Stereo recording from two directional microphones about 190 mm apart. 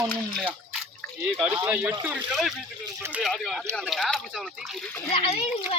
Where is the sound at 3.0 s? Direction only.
15° right (ahead or behind).